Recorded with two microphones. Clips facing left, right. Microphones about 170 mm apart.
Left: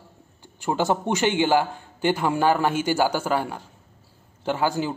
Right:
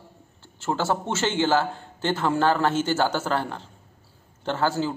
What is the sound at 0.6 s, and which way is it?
A man's voice, 15° left (ahead or behind).